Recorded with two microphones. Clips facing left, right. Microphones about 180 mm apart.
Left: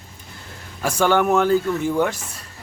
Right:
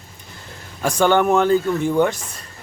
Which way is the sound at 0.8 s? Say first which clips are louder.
Right 2 dB; 5° left (ahead or behind).